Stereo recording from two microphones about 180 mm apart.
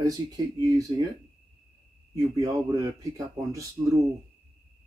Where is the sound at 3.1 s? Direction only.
20° right (ahead or behind).